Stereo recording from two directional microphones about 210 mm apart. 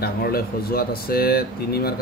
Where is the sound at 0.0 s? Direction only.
45° left (ahead or behind).